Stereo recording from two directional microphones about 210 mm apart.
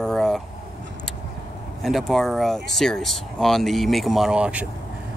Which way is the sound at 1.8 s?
Centre (ahead or behind).